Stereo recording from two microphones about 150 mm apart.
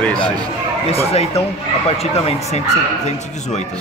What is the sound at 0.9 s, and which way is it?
Speech, 45° left (ahead or behind).